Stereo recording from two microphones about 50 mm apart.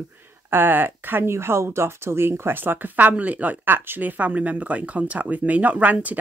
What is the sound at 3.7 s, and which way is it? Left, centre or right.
Speech, right.